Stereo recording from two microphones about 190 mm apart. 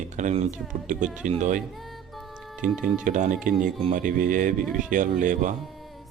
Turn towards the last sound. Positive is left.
turn(degrees=-45)  # may be behind; listen again after turning